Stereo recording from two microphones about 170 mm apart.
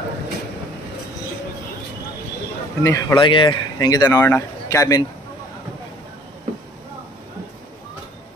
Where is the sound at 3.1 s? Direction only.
30° left (ahead or behind).